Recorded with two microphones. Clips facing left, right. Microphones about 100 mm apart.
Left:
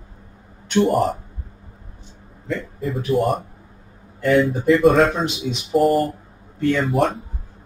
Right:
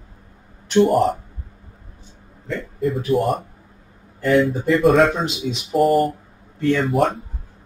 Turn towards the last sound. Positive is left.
turn(degrees=0)  # may be behind; listen again after turning